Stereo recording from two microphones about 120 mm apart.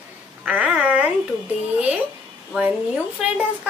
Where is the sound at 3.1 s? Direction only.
10° right (ahead or behind).